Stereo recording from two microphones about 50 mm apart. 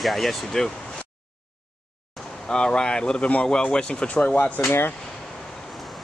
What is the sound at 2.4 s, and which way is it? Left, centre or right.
Speech, centre.